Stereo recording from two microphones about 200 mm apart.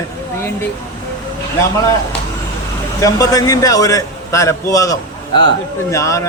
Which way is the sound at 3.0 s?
15° left (ahead or behind).